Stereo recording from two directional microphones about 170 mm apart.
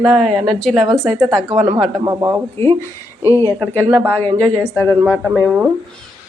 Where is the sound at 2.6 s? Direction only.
15° left (ahead or behind).